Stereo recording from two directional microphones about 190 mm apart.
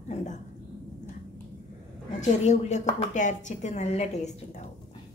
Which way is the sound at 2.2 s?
35° left (ahead or behind).